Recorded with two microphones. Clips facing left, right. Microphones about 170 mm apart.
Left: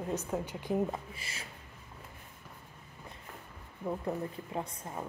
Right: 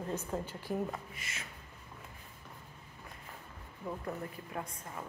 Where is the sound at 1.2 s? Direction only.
30° left (ahead or behind).